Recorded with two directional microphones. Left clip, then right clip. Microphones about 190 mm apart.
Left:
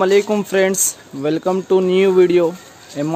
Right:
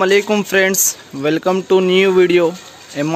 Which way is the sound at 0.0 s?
Centre (ahead or behind).